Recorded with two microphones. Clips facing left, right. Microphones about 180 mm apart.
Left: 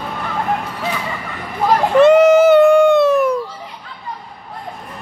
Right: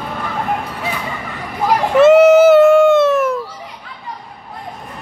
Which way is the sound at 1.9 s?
5° right (ahead or behind).